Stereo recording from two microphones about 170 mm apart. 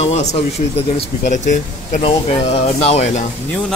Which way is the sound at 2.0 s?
35° left (ahead or behind).